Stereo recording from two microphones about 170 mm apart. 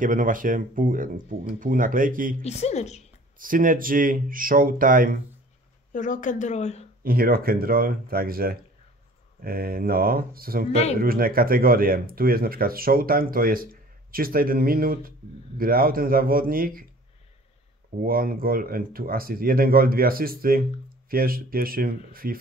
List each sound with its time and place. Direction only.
0.0 s speech: 50° right (ahead or behind)
2.4 s speech: 40° left (ahead or behind)
3.3 s speech: 55° right (ahead or behind)
5.9 s speech: 50° left (ahead or behind)
7.0 s speech: 60° right (ahead or behind)
10.7 s speech: 40° left (ahead or behind)
11.0 s speech: 60° right (ahead or behind)
18.0 s speech: 60° right (ahead or behind)